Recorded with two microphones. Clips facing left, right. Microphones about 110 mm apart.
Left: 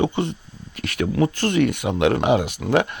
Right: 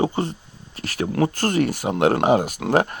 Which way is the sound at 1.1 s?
45° right (ahead or behind).